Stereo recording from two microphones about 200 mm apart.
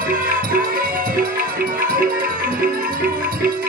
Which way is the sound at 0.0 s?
45° right (ahead or behind).